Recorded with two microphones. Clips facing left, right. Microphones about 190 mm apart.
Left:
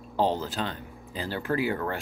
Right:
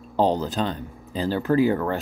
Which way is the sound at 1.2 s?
40° right (ahead or behind).